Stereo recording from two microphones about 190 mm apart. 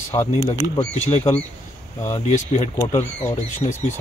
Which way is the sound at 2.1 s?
35° left (ahead or behind).